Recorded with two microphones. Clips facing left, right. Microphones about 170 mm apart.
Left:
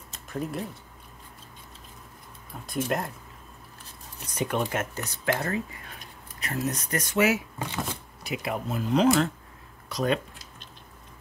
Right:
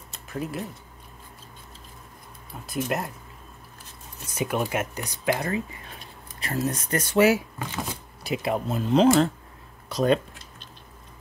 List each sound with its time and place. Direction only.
0.3 s speech: 5° right (ahead or behind)
2.6 s speech: 5° right (ahead or behind)
4.4 s speech: 10° right (ahead or behind)
5.9 s speech: 30° right (ahead or behind)